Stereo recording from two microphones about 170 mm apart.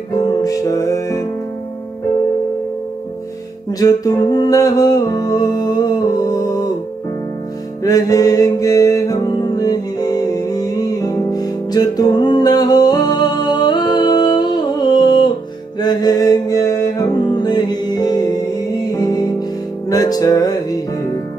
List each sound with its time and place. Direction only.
0.2 s music: 20° left (ahead or behind)
3.8 s music: 20° left (ahead or behind)
7.8 s music: 20° left (ahead or behind)